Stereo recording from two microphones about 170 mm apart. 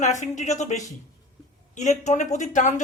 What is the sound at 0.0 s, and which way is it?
Speech, 45° left (ahead or behind).